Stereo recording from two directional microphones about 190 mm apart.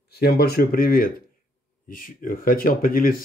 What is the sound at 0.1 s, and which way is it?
Speech, 55° left (ahead or behind).